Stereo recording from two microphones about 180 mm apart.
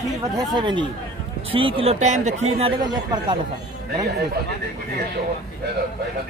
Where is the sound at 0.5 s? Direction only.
25° right (ahead or behind).